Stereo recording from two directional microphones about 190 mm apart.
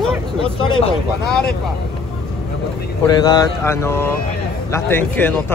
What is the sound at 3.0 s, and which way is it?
Speech, 20° left (ahead or behind).